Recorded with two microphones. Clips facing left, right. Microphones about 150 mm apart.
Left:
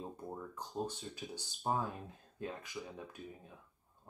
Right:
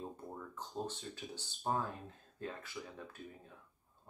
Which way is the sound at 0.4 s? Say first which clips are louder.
Left 2 dB; 10° left (ahead or behind).